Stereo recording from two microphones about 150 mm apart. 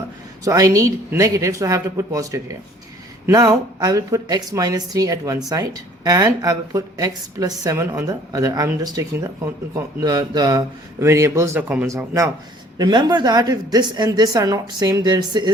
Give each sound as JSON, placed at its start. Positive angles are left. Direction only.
{"t": 0.4, "sound": "speech", "side_deg": -25}